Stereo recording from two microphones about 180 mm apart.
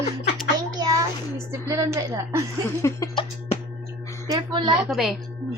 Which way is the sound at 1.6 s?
20° right (ahead or behind).